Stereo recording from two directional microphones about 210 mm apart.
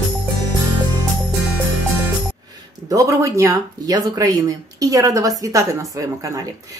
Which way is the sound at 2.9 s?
15° right (ahead or behind).